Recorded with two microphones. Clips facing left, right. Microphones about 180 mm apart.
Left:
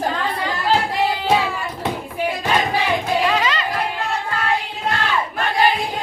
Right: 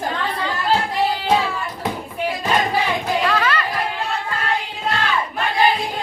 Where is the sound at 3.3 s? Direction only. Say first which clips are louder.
Even; 15° left (ahead or behind).